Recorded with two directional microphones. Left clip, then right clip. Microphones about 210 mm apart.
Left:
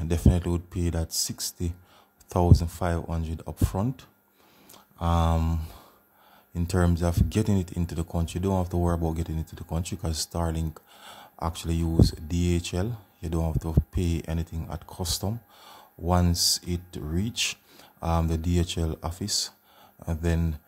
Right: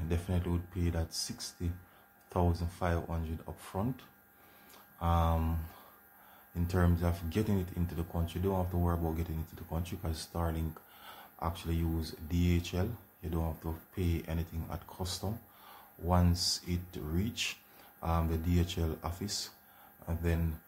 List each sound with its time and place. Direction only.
0.1 s speech: 55° left (ahead or behind)
6.5 s speech: 50° left (ahead or behind)